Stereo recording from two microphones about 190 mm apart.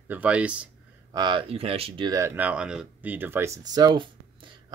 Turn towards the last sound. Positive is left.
turn(degrees=-20)  # may be behind; listen again after turning